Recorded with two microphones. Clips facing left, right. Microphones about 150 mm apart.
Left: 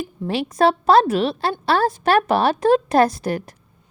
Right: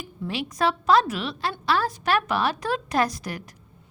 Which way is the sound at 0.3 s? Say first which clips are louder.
Left 7 dB; 30° left (ahead or behind).